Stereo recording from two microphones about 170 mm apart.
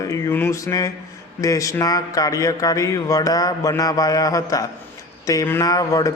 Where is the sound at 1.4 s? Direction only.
20° left (ahead or behind).